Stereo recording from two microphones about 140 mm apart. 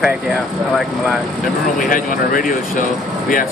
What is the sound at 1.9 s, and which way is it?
Speech, 85° left.